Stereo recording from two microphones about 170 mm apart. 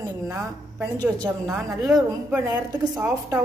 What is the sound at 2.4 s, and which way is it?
A woman's voice, 15° right (ahead or behind).